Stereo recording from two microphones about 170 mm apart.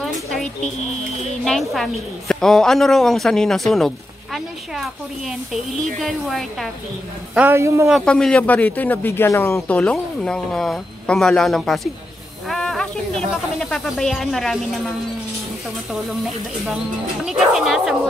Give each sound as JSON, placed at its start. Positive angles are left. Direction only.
{"t": 0.0, "sound": "a sound", "side_deg": 0}
{"t": 1.4, "sound": "a woman's voice", "side_deg": 0}
{"t": 7.3, "sound": "a man's voice", "side_deg": -15}
{"t": 7.9, "sound": "a woman's voice", "side_deg": 5}
{"t": 12.4, "sound": "snake", "side_deg": 5}
{"t": 13.6, "sound": "a woman's voice", "side_deg": 5}
{"t": 17.2, "sound": "a woman's voice", "side_deg": 0}